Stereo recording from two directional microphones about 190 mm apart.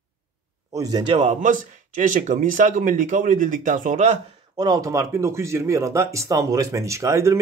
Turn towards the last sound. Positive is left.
turn(degrees=-15)  # may be behind; listen again after turning